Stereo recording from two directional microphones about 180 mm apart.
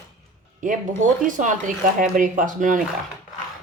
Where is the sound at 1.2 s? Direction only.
45° right (ahead or behind).